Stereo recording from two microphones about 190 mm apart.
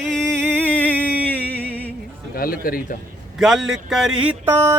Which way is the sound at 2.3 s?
50° left (ahead or behind).